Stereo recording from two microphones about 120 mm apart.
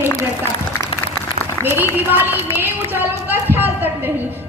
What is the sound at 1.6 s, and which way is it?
A woman's voice, 15° right (ahead or behind).